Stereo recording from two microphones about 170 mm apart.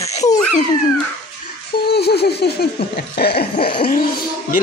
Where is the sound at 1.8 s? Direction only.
70° left (ahead or behind).